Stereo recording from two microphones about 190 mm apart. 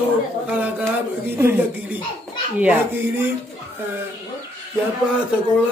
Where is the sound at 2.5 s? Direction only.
10° right (ahead or behind).